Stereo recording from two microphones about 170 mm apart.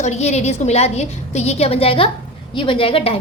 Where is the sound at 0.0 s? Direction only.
40° left (ahead or behind).